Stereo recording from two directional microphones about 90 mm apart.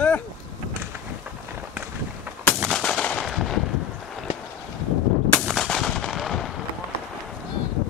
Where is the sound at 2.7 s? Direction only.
10° left (ahead or behind).